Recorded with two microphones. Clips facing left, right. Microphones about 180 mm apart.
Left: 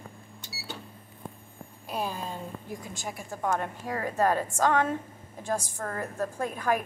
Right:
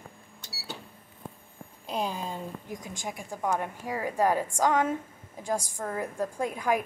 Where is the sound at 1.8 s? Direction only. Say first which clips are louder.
Right 1 dB; 15° right (ahead or behind).